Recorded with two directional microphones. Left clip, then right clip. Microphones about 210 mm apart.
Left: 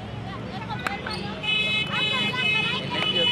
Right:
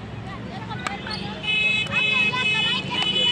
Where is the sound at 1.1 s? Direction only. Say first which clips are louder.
Right 2 dB; 25° left (ahead or behind).